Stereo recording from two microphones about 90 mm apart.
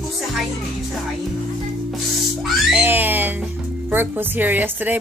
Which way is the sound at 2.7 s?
20° right (ahead or behind).